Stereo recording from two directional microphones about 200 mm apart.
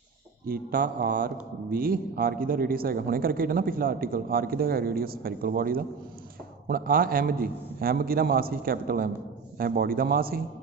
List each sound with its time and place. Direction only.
0.4 s a man's voice: 45° right (ahead or behind)